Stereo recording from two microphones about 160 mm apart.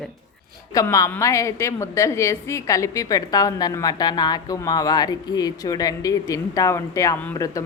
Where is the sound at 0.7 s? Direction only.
20° left (ahead or behind).